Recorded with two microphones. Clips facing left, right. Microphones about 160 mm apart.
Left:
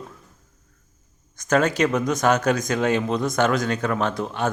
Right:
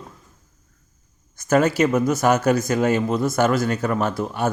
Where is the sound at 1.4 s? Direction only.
5° right (ahead or behind).